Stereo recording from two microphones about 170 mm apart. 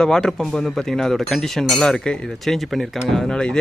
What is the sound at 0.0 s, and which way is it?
Speech, 5° left (ahead or behind).